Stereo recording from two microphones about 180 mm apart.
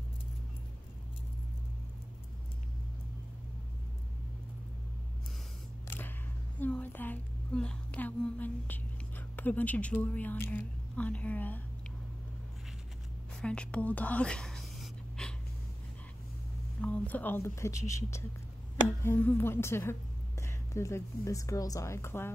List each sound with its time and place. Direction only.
5.9 s a sound: 10° left (ahead or behind)
13.4 s whispering: 5° left (ahead or behind)
16.8 s a woman's voice: 10° left (ahead or behind)